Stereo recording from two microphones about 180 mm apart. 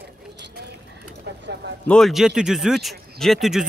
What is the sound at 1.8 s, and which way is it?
Speech, centre (ahead or behind).